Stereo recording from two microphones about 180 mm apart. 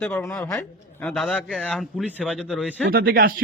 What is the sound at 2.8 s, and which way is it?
Speech, 55° right (ahead or behind).